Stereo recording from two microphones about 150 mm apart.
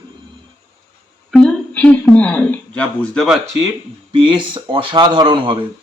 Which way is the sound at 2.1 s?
10° left (ahead or behind).